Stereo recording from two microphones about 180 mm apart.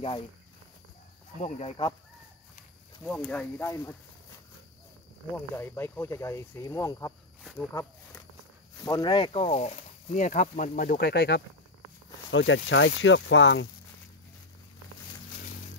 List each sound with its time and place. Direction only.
1.4 s speech: 40° left (ahead or behind)
3.2 s speech: 10° left (ahead or behind)
5.3 s speech: 15° left (ahead or behind)
8.8 s speech: 25° left (ahead or behind)
9.6 s speech: 45° left (ahead or behind); by 11.4 s 65° left (ahead or behind)
12.3 s speech: 90° left